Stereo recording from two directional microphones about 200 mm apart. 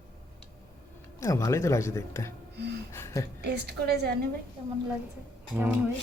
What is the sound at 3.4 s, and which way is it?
Speech, 55° right (ahead or behind).